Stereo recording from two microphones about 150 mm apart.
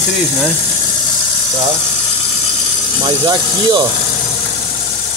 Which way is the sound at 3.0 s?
25° right (ahead or behind).